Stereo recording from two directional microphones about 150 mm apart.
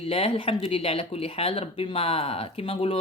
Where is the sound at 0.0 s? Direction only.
40° left (ahead or behind).